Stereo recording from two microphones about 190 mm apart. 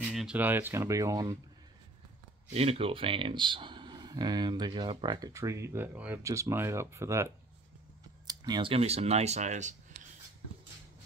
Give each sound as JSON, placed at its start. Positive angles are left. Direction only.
{"t": 0.0, "sound": "speech", "side_deg": -5}
{"t": 2.5, "sound": "speech", "side_deg": -35}